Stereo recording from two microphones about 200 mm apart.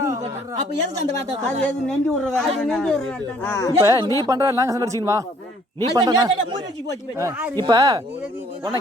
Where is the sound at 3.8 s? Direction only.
20° right (ahead or behind).